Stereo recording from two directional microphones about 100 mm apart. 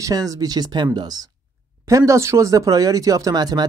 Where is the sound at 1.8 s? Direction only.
30° right (ahead or behind).